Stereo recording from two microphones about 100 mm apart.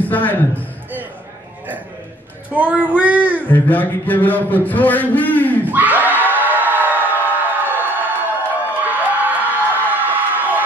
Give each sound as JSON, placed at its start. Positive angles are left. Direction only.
{"t": 0.0, "sound": "a man's voice", "side_deg": 15}
{"t": 2.5, "sound": "child singing", "side_deg": -15}
{"t": 3.4, "sound": "a man's voice", "side_deg": 20}
{"t": 5.7, "sound": "crowd", "side_deg": -15}